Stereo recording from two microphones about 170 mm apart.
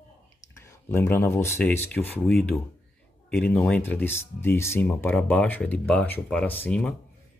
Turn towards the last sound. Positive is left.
turn(degrees=5)  # may be behind; listen again after turning